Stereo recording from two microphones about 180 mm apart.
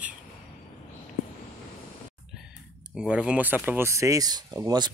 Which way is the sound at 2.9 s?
5° right (ahead or behind).